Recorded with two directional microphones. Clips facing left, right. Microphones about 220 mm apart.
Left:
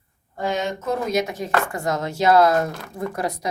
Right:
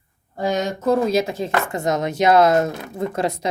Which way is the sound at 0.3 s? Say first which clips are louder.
Right 3 dB; 40° right (ahead or behind).